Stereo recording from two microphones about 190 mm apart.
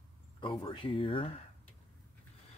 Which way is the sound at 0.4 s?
25° left (ahead or behind).